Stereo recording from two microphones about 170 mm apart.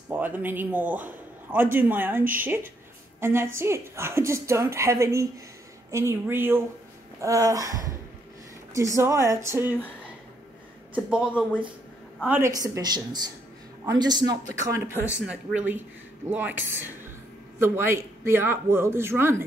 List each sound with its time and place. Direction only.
0.1 s a man's voice: 10° right (ahead or behind)
11.1 s speech: 5° right (ahead or behind)
12.3 s a woman's voice: 15° right (ahead or behind)
15.1 s a woman's voice: 5° right (ahead or behind)